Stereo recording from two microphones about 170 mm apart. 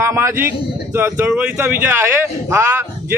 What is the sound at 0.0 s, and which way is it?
A man's voice, 15° right (ahead or behind).